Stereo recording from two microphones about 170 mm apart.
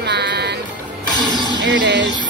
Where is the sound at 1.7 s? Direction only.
90° right.